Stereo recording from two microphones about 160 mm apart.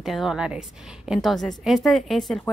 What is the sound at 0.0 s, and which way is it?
A woman's voice, centre (ahead or behind).